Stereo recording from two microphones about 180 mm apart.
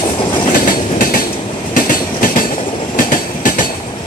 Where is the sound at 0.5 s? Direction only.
50° left (ahead or behind).